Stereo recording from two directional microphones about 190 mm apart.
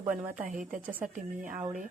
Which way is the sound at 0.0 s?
10° right (ahead or behind).